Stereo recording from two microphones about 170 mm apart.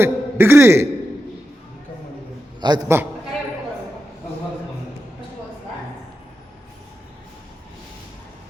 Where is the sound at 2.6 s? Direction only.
25° right (ahead or behind).